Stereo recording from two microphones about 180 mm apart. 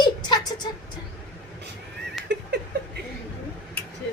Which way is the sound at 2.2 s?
Centre (ahead or behind).